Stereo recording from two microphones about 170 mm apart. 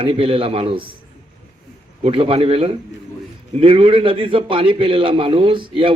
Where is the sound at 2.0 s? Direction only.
35° right (ahead or behind).